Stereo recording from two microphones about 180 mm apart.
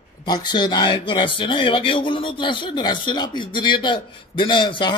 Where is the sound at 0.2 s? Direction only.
25° left (ahead or behind).